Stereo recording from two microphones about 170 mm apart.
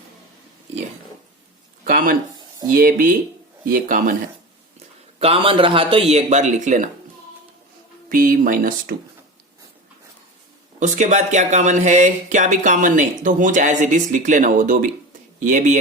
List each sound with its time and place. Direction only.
1.8 s a sound: 55° right (ahead or behind)
2.6 s speech: 55° right (ahead or behind)
5.2 s a man's voice: 35° right (ahead or behind)
8.1 s speech: 55° right (ahead or behind)
10.8 s speech: 45° right (ahead or behind)